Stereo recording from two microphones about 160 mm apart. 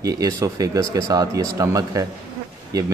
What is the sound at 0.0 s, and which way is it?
Speech, 20° right (ahead or behind).